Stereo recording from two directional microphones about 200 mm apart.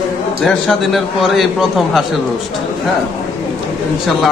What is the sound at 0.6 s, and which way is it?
Speech, centre (ahead or behind).